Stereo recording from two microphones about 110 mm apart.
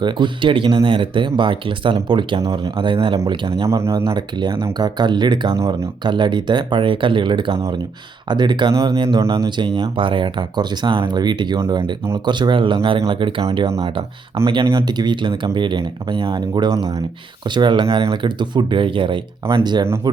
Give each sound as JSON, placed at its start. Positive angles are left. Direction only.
{"t": 0.0, "sound": "speech", "side_deg": -45}
{"t": 3.7, "sound": "speech", "side_deg": -25}
{"t": 4.0, "sound": "speech", "side_deg": -40}
{"t": 5.5, "sound": "speech", "side_deg": -25}
{"t": 6.0, "sound": "speech", "side_deg": -45}
{"t": 14.7, "sound": "speech", "side_deg": -35}